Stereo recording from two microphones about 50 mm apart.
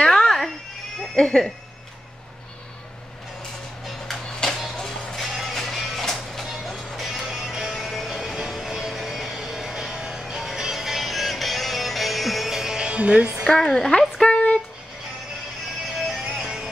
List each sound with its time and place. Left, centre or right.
0.1 s cat: centre
1.1 s a woman's voice: centre
4.6 s music: centre
13.6 s a woman's voice: centre
14.2 s a sound: left
16.0 s music: centre